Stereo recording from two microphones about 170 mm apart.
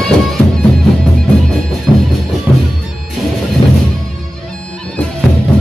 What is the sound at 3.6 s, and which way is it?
Music, 25° left (ahead or behind).